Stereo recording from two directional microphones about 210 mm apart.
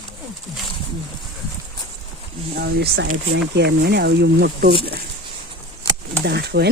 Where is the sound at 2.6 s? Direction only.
50° right (ahead or behind).